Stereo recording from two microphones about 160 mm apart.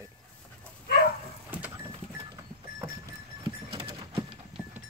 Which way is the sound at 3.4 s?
35° right (ahead or behind).